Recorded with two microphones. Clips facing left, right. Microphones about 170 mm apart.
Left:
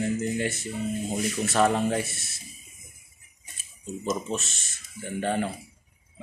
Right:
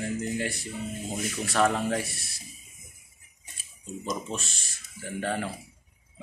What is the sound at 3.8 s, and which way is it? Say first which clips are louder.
Speech: left 4 dB; 5° left (ahead or behind).